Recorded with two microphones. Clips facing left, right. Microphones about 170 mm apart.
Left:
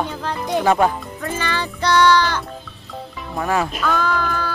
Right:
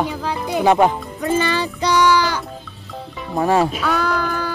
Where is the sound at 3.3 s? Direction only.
30° right (ahead or behind).